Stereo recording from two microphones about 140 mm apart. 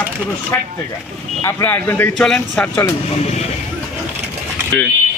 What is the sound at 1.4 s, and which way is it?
Speech, 15° left (ahead or behind).